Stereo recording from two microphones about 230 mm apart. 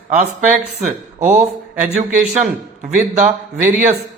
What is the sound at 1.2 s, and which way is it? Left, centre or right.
A man's voice, right.